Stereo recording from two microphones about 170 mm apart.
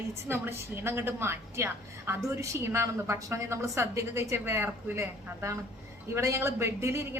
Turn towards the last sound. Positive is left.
turn(degrees=-15)  # may be behind; listen again after turning